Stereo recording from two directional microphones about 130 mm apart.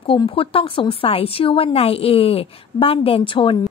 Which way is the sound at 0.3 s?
45° left (ahead or behind).